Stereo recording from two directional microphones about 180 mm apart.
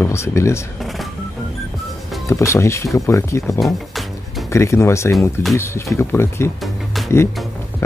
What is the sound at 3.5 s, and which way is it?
Music, centre (ahead or behind).